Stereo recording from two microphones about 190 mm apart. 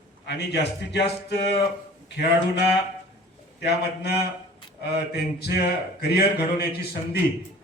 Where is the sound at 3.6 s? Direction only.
60° left (ahead or behind).